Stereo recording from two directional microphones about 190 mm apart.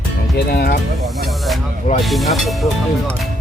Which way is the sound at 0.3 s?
55° left (ahead or behind).